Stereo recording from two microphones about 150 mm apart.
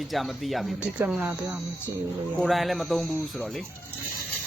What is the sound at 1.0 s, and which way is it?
Speech, 10° right (ahead or behind).